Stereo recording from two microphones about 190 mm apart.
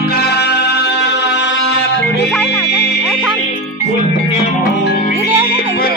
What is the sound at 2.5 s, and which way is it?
Music, 10° left (ahead or behind).